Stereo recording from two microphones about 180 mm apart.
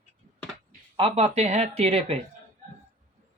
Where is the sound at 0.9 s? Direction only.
30° right (ahead or behind).